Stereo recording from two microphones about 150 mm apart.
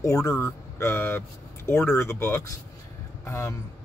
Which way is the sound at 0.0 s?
20° left (ahead or behind).